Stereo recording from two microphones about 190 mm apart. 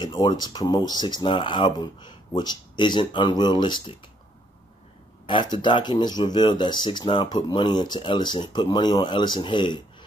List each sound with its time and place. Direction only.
0.0 s speech: 25° left (ahead or behind)
5.2 s speech: 25° left (ahead or behind)